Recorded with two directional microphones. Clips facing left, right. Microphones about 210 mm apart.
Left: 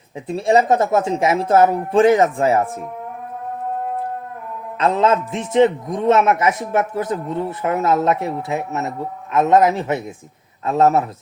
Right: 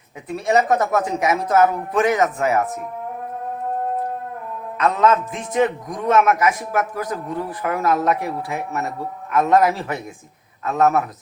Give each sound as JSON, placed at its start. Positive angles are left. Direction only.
{"t": 0.3, "sound": "a man's voice", "side_deg": 30}
{"t": 4.8, "sound": "a man's voice", "side_deg": 30}